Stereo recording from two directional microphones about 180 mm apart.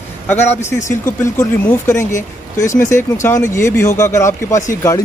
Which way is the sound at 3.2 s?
15° left (ahead or behind).